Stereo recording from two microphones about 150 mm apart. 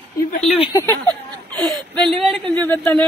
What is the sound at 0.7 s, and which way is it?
Speech, 20° left (ahead or behind).